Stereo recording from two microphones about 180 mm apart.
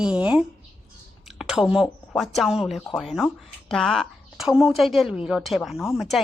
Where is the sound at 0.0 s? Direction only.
5° right (ahead or behind).